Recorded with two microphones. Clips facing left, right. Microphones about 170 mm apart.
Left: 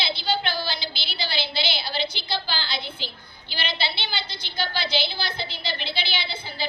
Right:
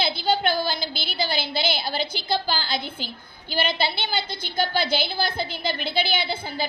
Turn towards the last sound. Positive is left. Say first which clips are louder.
# right 6 dB
turn(degrees=-50)  # may be behind; listen again after turning